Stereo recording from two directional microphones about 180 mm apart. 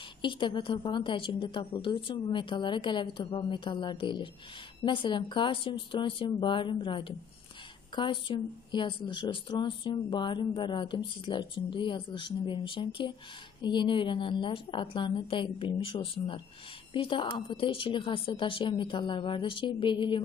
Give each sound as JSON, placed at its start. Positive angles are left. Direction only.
{"t": 0.2, "sound": "a woman's voice", "side_deg": 25}